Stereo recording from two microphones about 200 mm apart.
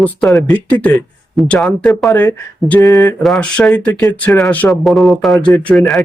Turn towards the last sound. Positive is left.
turn(degrees=0)  # may be behind; listen again after turning